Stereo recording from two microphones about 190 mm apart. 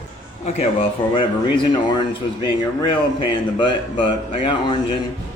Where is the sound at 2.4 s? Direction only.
25° left (ahead or behind).